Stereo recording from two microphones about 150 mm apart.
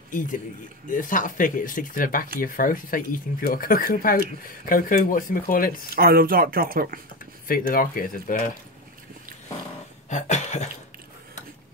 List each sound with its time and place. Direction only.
0.1 s a man's voice: 60° left (ahead or behind)
5.9 s speech: 80° right
7.4 s speech: 70° left (ahead or behind)
10.0 s a sound: 50° left (ahead or behind)